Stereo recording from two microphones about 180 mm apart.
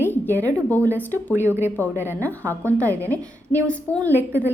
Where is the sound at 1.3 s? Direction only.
10° right (ahead or behind).